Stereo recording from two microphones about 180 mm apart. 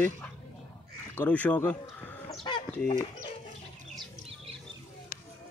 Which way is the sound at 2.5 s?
25° left (ahead or behind).